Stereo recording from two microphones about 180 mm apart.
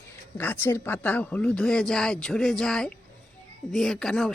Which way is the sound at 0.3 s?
10° left (ahead or behind).